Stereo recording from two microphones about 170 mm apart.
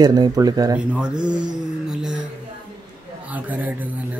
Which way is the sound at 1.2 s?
25° right (ahead or behind).